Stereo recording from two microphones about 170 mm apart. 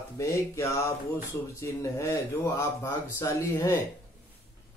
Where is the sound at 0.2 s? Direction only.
15° left (ahead or behind).